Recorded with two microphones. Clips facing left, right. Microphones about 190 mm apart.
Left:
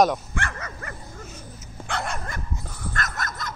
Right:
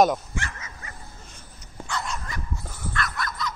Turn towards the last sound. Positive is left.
turn(degrees=45)  # may be behind; listen again after turning